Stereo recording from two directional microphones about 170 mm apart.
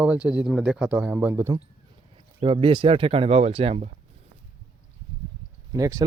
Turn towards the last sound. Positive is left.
turn(degrees=-20)  # may be behind; listen again after turning